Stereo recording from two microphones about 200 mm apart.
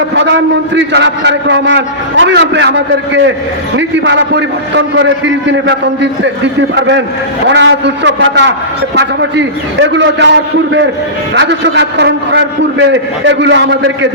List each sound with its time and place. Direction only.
0.1 s a man's voice: 65° right (ahead or behind)
11.3 s a man's voice: 60° right (ahead or behind)